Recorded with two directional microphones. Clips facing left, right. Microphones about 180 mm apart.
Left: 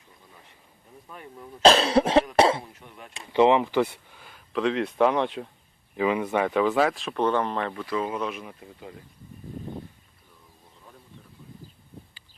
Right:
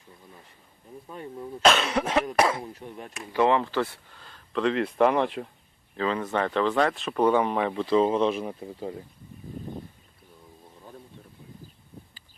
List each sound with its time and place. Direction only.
1.1 s speech: 30° right (ahead or behind)
1.6 s cough: 30° left (ahead or behind)
2.3 s speech: 30° left (ahead or behind)
2.7 s speech: 35° right (ahead or behind)
3.1 s speech: 30° left (ahead or behind)
3.4 s speech: 15° left (ahead or behind); by 5.5 s centre (ahead or behind)
6.0 s speech: 10° left (ahead or behind); by 7.8 s 10° right (ahead or behind)
7.8 s speech: 25° right (ahead or behind)